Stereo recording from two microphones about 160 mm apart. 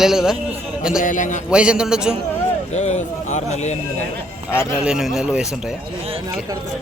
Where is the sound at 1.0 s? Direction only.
55° left (ahead or behind).